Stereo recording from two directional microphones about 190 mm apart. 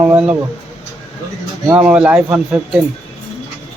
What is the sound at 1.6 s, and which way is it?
Speech, 10° right (ahead or behind).